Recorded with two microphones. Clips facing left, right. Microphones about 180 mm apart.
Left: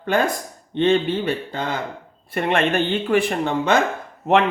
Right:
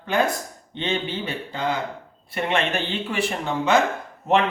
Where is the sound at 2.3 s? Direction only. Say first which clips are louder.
Left 4 dB; 55° left (ahead or behind).